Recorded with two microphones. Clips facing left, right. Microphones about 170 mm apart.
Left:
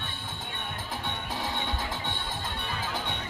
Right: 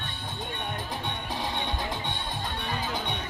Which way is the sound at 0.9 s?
15° right (ahead or behind).